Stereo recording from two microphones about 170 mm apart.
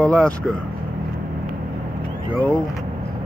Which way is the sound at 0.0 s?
5° left (ahead or behind).